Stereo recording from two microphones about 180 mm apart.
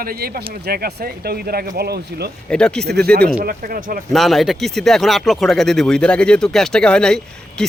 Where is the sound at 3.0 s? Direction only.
60° right (ahead or behind).